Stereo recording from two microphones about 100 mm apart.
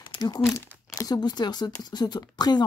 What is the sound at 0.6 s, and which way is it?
Speech, 40° left (ahead or behind).